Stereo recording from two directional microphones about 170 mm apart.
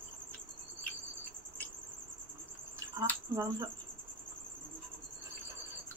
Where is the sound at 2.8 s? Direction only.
20° right (ahead or behind).